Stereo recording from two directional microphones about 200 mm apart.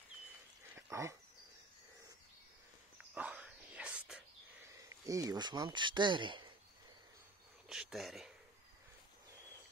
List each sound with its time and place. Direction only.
0.7 s a sound: 15° right (ahead or behind)
3.2 s whispering: 5° right (ahead or behind)
4.7 s speech: 15° right (ahead or behind)
7.6 s speech: 5° right (ahead or behind)